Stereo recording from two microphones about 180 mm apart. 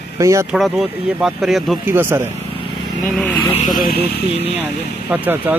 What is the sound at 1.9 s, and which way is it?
Speech, 10° right (ahead or behind).